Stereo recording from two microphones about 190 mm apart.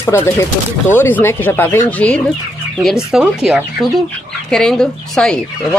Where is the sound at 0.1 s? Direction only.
15° left (ahead or behind).